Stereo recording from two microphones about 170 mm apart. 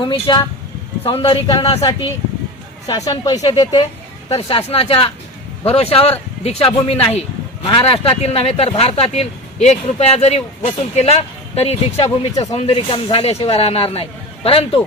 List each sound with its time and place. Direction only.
0.0 s speech: 30° left (ahead or behind)
1.8 s speech: 20° left (ahead or behind)